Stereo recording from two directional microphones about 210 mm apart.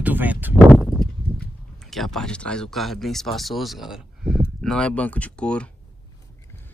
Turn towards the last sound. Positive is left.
turn(degrees=5)  # may be behind; listen again after turning